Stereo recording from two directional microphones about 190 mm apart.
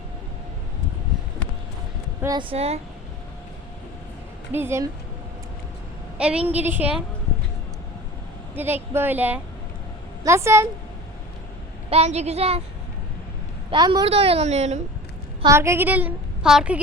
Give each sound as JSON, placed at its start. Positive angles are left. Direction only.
{"t": 2.2, "sound": "speech", "side_deg": -25}
{"t": 4.5, "sound": "a woman's voice", "side_deg": -15}
{"t": 6.1, "sound": "a woman's voice", "side_deg": -5}
{"t": 8.5, "sound": "a woman's voice", "side_deg": -10}
{"t": 11.9, "sound": "a woman's voice", "side_deg": -35}
{"t": 13.7, "sound": "a woman's voice", "side_deg": -25}
{"t": 15.4, "sound": "a woman's voice", "side_deg": -15}